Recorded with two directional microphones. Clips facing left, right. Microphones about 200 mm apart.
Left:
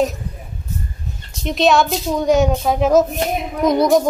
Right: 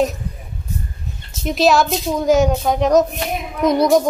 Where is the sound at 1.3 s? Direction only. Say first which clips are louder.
Even; 5° right (ahead or behind).